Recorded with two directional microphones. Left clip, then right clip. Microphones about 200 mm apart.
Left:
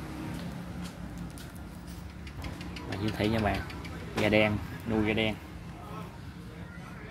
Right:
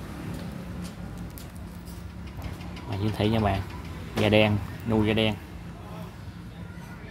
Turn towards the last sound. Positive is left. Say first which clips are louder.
# right 4 dB
turn(degrees=-20)  # may be behind; listen again after turning